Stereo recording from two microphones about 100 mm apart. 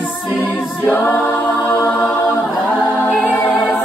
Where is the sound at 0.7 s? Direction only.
20° left (ahead or behind).